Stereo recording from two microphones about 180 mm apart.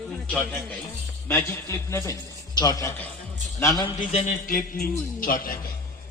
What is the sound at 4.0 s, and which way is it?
A man's voice, 45° left (ahead or behind).